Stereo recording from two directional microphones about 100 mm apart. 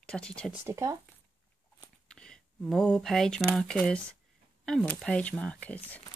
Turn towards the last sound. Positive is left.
turn(degrees=15)  # may be behind; listen again after turning